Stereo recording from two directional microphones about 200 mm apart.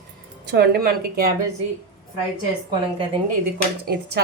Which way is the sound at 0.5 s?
55° right (ahead or behind).